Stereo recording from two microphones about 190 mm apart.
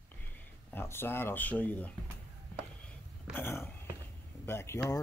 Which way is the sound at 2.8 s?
10° left (ahead or behind).